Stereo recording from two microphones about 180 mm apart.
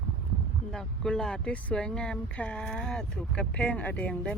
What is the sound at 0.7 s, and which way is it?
Speech, 5° left (ahead or behind).